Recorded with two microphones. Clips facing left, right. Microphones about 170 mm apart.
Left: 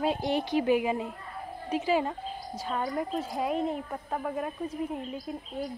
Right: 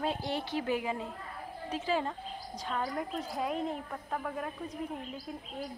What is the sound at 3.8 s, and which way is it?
Speech, 20° left (ahead or behind).